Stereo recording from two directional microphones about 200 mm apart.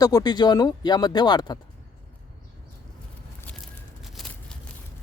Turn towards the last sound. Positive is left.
turn(degrees=0)  # may be behind; listen again after turning